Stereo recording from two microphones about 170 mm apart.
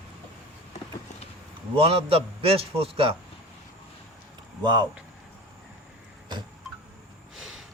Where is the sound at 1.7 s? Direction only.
35° right (ahead or behind).